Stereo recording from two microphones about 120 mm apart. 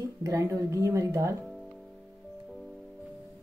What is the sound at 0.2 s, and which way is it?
Speech, 30° right (ahead or behind).